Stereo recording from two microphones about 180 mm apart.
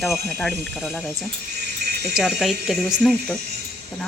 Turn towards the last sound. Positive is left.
turn(degrees=0)  # may be behind; listen again after turning